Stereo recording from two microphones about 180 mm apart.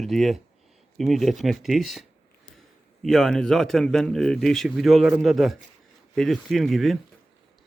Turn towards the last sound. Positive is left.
turn(degrees=0)  # may be behind; listen again after turning